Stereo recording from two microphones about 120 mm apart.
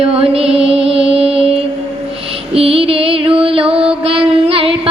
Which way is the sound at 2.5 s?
55° right (ahead or behind).